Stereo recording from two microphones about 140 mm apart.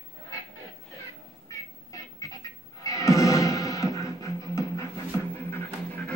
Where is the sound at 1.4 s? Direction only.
25° left (ahead or behind).